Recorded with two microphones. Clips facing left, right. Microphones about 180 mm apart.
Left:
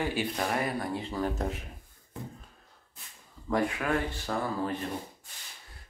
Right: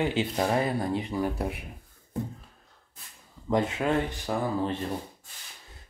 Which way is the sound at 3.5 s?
20° right (ahead or behind).